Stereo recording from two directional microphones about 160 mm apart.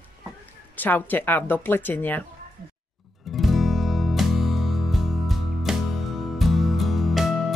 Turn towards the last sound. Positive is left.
turn(degrees=0)  # may be behind; listen again after turning